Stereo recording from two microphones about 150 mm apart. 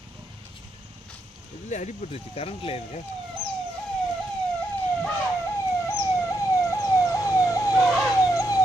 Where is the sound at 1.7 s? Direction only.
45° left (ahead or behind).